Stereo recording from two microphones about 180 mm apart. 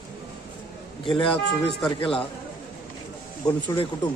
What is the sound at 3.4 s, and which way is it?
Speech, 20° left (ahead or behind).